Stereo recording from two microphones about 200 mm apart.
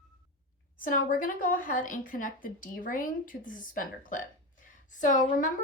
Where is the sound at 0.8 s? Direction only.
40° left (ahead or behind).